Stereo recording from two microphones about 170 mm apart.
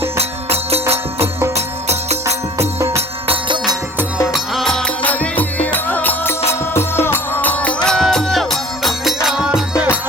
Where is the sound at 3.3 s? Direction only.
30° right (ahead or behind).